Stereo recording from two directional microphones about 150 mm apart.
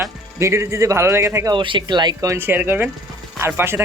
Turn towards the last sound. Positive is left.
turn(degrees=-15)  # may be behind; listen again after turning